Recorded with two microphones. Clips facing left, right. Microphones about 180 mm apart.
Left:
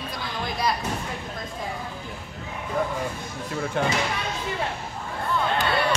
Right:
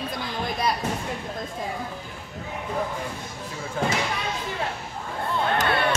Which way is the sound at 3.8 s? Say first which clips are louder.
Left 1 dB; 70° left (ahead or behind).